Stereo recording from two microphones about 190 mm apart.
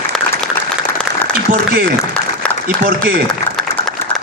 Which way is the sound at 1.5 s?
45° right (ahead or behind).